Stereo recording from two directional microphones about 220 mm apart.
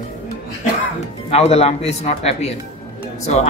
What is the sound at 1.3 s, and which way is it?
A man's voice, 30° left (ahead or behind).